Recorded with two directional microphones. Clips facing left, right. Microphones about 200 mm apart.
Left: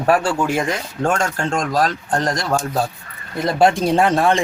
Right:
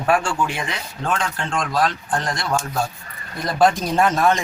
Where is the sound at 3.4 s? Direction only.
25° left (ahead or behind).